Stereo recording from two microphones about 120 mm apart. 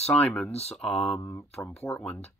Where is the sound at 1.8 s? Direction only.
5° left (ahead or behind).